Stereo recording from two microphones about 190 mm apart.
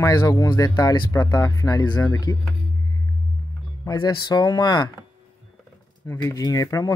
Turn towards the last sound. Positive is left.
turn(degrees=20)  # may be behind; listen again after turning